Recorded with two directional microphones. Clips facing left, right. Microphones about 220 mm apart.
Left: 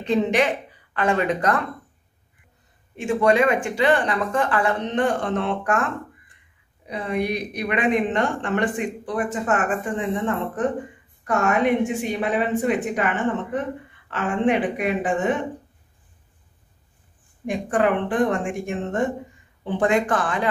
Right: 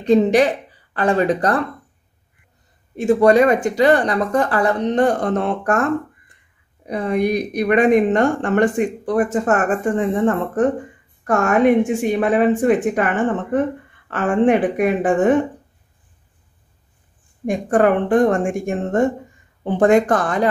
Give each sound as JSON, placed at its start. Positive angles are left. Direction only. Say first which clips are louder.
{"t": 0.0, "sound": "speech", "louder": "right 6 dB", "side_deg": -40}
{"t": 3.0, "sound": "speech", "louder": "right 6 dB", "side_deg": -40}
{"t": 6.9, "sound": "speech", "louder": "right 6 dB", "side_deg": -45}
{"t": 17.5, "sound": "speech", "louder": "right 5 dB", "side_deg": -45}